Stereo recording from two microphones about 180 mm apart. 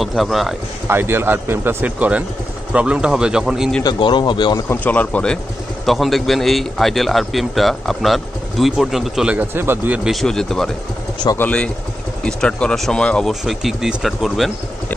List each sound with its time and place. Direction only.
0.0 s a man's voice: centre (ahead or behind)
0.8 s a man's voice: 10° right (ahead or behind)
3.8 s a man's voice: 25° left (ahead or behind)
4.6 s a man's voice: 10° left (ahead or behind); by 10.1 s 10° right (ahead or behind)
10.2 s a man's voice: 5° left (ahead or behind)